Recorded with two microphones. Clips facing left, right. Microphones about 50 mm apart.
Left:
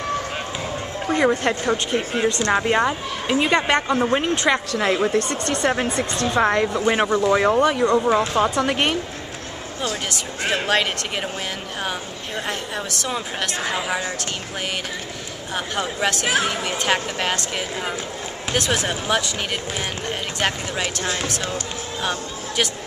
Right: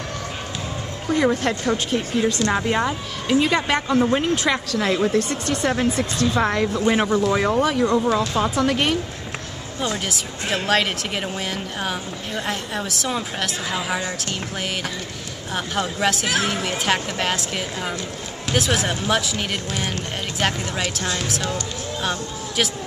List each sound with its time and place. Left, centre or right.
1.1 s speech: left
1.4 s speech: centre
5.3 s speech: centre
6.3 s speech: centre
8.1 s speech: left
10.0 s speech: centre
12.4 s speech: centre
15.5 s speech: centre
16.3 s speech: centre
16.6 s speech: centre
20.3 s speech: centre
20.8 s speech: left